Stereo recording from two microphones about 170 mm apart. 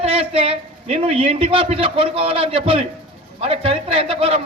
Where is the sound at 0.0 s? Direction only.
35° right (ahead or behind).